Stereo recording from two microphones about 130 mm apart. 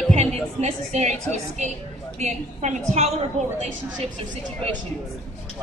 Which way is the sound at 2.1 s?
65° right (ahead or behind).